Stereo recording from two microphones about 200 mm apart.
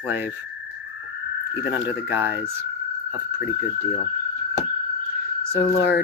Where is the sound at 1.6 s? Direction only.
10° right (ahead or behind).